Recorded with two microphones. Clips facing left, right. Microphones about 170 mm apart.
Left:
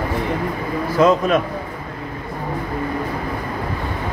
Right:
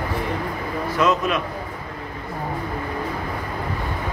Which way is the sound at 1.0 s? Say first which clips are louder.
Left 6 dB; 35° left (ahead or behind).